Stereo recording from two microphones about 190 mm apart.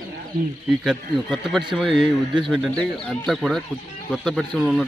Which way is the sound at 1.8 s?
25° right (ahead or behind).